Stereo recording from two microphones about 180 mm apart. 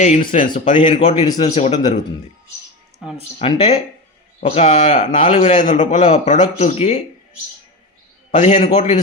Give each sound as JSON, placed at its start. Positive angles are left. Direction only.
{"t": 0.0, "sound": "speech", "side_deg": 45}
{"t": 0.8, "sound": "a man's voice", "side_deg": 30}
{"t": 3.0, "sound": "speech", "side_deg": -5}
{"t": 3.3, "sound": "a man's voice", "side_deg": 40}
{"t": 8.3, "sound": "a man's voice", "side_deg": 40}